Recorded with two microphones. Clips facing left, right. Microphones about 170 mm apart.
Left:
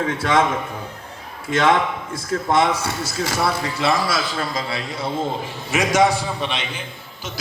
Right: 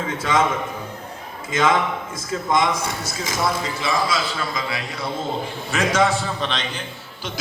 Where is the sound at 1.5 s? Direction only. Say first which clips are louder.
Left 2 dB; 65° left (ahead or behind).